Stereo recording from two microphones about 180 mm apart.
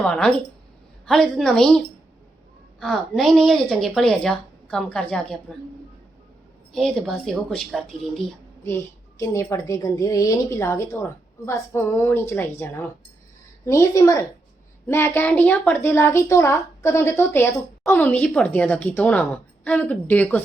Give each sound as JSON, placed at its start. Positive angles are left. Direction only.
{"t": 0.0, "sound": "a woman's voice", "side_deg": 5}
{"t": 2.8, "sound": "a woman's voice", "side_deg": 0}
{"t": 6.7, "sound": "a woman's voice", "side_deg": 0}
{"t": 8.6, "sound": "a woman's voice", "side_deg": 15}